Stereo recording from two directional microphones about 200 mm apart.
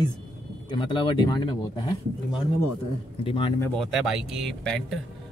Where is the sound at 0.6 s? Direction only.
25° left (ahead or behind).